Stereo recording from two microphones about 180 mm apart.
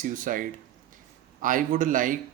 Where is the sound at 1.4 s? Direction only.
45° right (ahead or behind).